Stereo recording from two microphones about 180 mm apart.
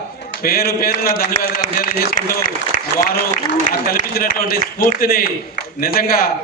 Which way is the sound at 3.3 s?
50° left (ahead or behind).